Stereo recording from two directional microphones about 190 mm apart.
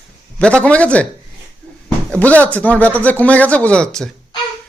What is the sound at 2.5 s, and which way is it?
Speech, 10° left (ahead or behind).